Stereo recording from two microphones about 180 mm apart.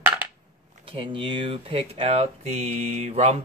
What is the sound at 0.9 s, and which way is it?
Speech, 30° right (ahead or behind).